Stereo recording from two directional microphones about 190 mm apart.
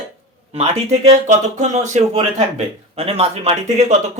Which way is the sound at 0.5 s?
35° right (ahead or behind).